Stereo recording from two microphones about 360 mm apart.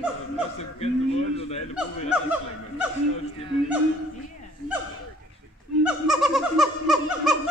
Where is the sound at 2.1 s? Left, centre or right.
Centre.